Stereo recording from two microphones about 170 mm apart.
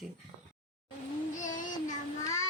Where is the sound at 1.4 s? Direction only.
50° left (ahead or behind).